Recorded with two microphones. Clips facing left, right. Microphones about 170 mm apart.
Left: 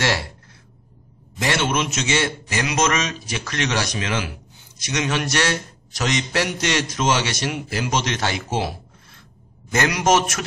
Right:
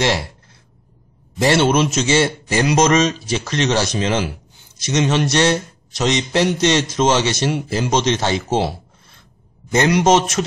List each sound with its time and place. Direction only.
1.4 s a man's voice: 30° right (ahead or behind)